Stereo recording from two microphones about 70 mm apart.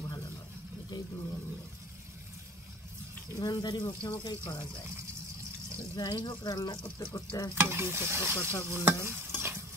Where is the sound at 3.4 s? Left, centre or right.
Left.